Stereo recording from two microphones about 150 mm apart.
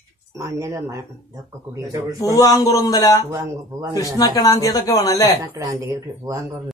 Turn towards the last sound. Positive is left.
turn(degrees=-25)  # may be behind; listen again after turning